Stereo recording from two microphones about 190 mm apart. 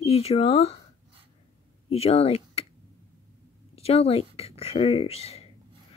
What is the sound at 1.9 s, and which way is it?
Speech, 30° left (ahead or behind).